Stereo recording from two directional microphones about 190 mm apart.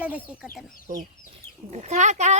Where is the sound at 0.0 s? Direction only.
10° right (ahead or behind).